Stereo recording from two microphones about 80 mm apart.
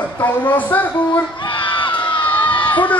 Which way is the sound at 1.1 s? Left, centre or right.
Left.